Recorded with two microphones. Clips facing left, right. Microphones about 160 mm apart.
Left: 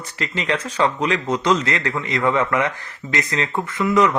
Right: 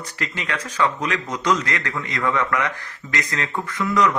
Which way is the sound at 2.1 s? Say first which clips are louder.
Left 3 dB; 20° left (ahead or behind).